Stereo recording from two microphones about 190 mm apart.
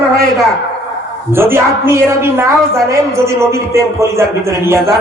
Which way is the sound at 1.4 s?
10° right (ahead or behind).